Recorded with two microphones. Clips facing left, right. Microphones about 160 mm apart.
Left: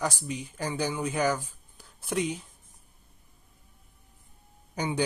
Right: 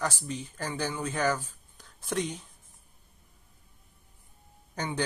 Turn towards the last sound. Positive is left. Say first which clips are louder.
# left 3 dB
turn(degrees=10)  # may be behind; listen again after turning